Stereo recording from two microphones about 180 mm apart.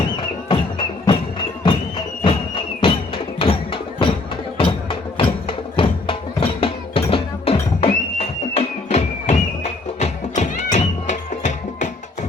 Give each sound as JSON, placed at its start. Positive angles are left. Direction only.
{"t": 0.4, "sound": "music", "side_deg": 30}
{"t": 2.2, "sound": "music", "side_deg": 30}